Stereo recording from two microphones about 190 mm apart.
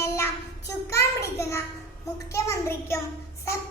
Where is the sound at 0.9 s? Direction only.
15° left (ahead or behind).